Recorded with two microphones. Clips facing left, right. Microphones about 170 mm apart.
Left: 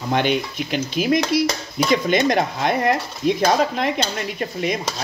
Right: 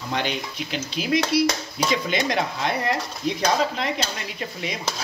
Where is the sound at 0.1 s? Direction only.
55° left (ahead or behind).